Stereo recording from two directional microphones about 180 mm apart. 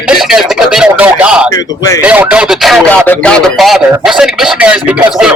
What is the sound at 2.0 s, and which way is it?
Speech, 5° right (ahead or behind).